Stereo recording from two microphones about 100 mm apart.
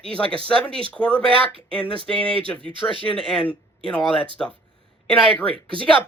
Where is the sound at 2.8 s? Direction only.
20° left (ahead or behind).